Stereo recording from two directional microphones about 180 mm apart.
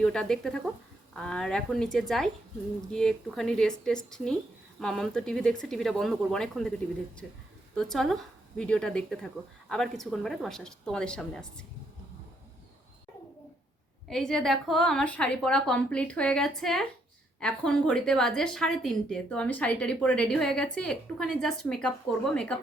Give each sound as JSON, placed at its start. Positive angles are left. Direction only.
{"t": 0.0, "sound": "a woman's voice", "side_deg": 5}
{"t": 14.1, "sound": "a woman's voice", "side_deg": 5}